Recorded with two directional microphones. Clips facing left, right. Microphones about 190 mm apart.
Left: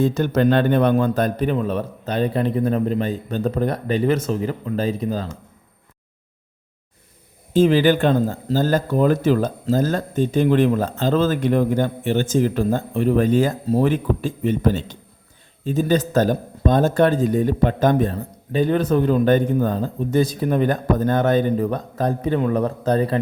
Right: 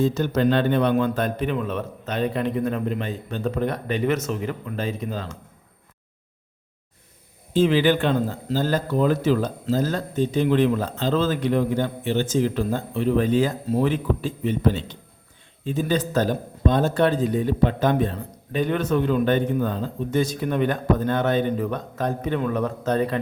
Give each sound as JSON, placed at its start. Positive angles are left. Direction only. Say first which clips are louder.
{"t": 0.0, "sound": "a man's voice", "louder": "left 3 dB", "side_deg": 55}
{"t": 7.5, "sound": "a man's voice", "louder": "left 3 dB", "side_deg": 45}
{"t": 18.5, "sound": "a man's voice", "louder": "left 4 dB", "side_deg": 35}